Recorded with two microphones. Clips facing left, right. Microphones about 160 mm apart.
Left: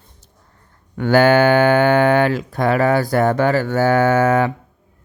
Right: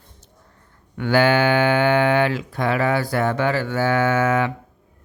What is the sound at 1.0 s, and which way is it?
Speech, 45° left (ahead or behind).